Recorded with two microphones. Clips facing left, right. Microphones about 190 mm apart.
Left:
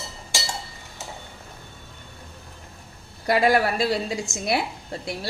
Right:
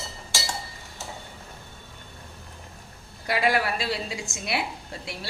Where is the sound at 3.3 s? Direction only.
45° left (ahead or behind).